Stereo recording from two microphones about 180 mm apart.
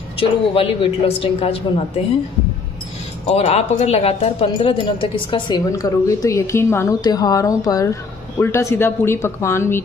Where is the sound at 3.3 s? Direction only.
35° left (ahead or behind).